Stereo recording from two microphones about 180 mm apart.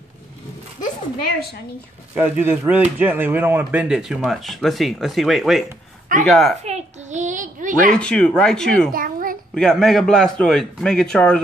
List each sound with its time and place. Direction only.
2.1 s speech: 10° right (ahead or behind)
6.6 s a sound: 40° right (ahead or behind)
7.9 s speech: 5° left (ahead or behind)
8.9 s babbling: 50° right (ahead or behind)
9.6 s speech: 5° left (ahead or behind)